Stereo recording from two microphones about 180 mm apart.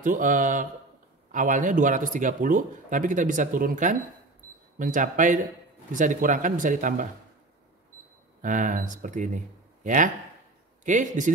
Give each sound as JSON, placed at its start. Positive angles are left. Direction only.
{"t": 0.0, "sound": "speech", "side_deg": -45}
{"t": 8.4, "sound": "speech", "side_deg": -45}